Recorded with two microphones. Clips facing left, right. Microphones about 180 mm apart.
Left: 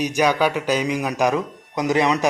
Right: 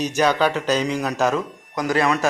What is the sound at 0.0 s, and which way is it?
Speech, 10° left (ahead or behind).